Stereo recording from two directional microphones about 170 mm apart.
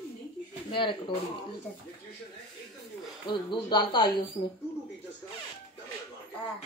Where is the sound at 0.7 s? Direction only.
30° left (ahead or behind).